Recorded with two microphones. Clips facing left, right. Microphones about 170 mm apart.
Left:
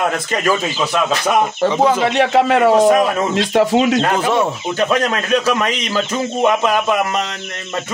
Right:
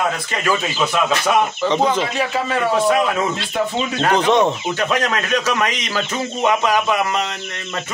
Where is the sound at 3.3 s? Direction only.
90° left.